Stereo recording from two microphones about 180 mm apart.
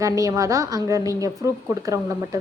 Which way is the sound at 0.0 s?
20° right (ahead or behind).